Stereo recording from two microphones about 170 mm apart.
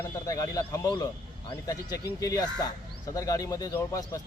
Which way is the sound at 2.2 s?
20° left (ahead or behind).